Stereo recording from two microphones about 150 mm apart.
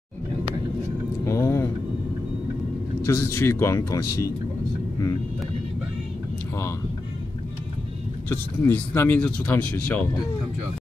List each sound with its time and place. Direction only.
1.2 s a sound: 20° left (ahead or behind)
3.1 s speech: 20° left (ahead or behind)
8.3 s speech: 15° left (ahead or behind)